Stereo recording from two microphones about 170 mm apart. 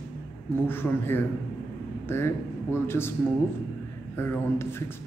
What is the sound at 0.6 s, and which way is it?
A man's voice, 10° left (ahead or behind).